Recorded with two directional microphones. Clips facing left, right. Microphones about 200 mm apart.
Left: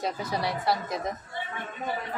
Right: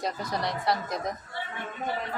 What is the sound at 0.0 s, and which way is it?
Speech, 5° left (ahead or behind).